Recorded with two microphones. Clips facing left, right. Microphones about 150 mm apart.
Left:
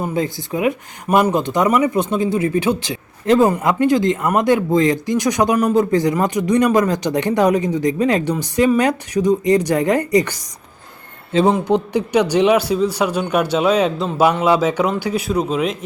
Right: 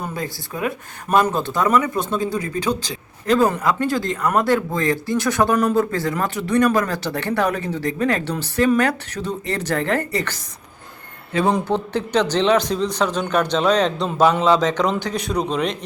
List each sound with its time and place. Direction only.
0.0 s speech: 20° left (ahead or behind)
11.3 s speech: 25° left (ahead or behind)
11.7 s speech: 10° left (ahead or behind)